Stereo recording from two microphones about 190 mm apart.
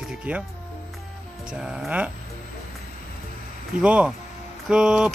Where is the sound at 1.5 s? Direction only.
5° right (ahead or behind).